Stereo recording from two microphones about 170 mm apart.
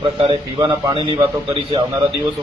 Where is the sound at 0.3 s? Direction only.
30° right (ahead or behind).